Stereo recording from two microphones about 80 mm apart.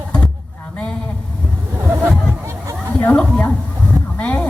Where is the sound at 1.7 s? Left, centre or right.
Right.